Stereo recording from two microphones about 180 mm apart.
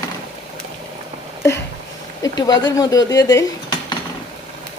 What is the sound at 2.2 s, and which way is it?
Dishes, 20° left (ahead or behind).